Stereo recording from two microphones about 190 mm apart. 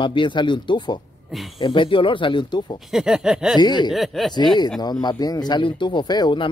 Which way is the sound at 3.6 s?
25° left (ahead or behind).